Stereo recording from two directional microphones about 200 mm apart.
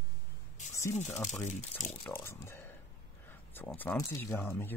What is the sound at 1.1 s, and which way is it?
Speech, centre (ahead or behind).